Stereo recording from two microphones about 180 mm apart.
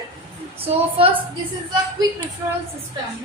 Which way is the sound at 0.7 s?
30° right (ahead or behind).